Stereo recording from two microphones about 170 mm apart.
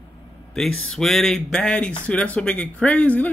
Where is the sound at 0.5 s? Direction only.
5° left (ahead or behind).